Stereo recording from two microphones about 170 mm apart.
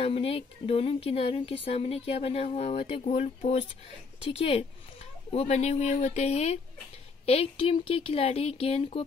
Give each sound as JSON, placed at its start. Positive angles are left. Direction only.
{"t": 0.0, "sound": "speech", "side_deg": 35}